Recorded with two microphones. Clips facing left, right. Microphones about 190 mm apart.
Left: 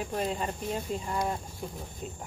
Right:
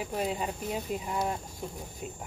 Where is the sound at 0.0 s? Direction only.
5° right (ahead or behind).